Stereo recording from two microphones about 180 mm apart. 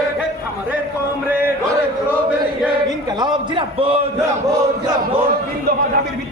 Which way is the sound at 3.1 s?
25° right (ahead or behind).